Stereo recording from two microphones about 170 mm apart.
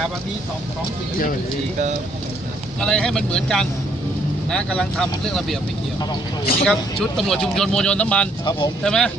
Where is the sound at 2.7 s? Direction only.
5° left (ahead or behind).